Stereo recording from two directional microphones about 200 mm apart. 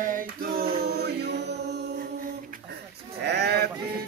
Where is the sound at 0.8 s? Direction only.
55° right (ahead or behind).